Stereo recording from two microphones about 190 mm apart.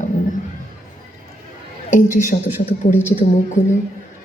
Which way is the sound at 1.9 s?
40° left (ahead or behind).